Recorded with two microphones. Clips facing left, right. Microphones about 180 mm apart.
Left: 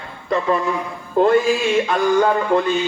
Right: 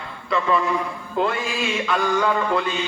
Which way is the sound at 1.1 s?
40° left (ahead or behind).